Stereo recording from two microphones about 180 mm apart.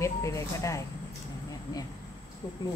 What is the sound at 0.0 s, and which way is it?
Speech, 15° left (ahead or behind).